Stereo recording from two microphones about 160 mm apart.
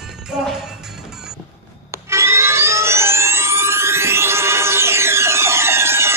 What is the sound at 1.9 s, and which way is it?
Music, 15° right (ahead or behind).